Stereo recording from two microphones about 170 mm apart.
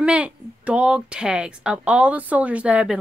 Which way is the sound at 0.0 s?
5° right (ahead or behind).